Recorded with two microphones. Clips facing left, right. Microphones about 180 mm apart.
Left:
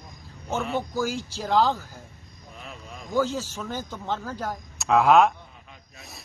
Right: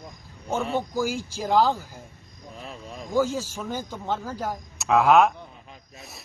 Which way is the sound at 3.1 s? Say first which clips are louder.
Right 1 dB; 10° right (ahead or behind).